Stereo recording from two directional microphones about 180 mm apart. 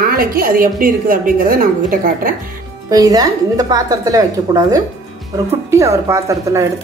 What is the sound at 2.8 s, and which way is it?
A woman's voice, 20° right (ahead or behind).